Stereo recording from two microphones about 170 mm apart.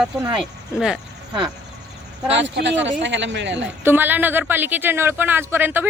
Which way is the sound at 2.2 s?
90° right.